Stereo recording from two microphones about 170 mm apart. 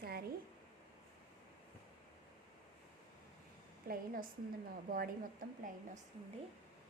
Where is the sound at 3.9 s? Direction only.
55° right (ahead or behind).